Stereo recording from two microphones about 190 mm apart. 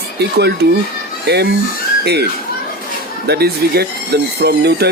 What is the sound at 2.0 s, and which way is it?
Speech, 60° right (ahead or behind).